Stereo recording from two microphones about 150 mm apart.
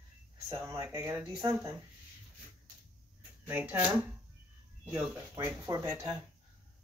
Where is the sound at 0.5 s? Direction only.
15° right (ahead or behind).